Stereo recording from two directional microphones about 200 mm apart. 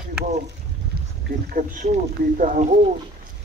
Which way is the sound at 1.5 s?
40° right (ahead or behind).